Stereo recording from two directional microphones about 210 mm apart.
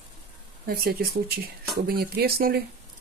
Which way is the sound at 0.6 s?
45° right (ahead or behind).